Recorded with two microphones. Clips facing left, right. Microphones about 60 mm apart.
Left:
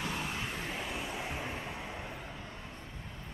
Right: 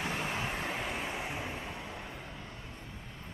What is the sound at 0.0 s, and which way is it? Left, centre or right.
Vehicle, right.